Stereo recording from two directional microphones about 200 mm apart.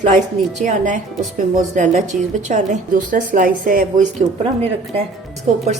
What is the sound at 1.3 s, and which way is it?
A woman's voice, 40° right (ahead or behind).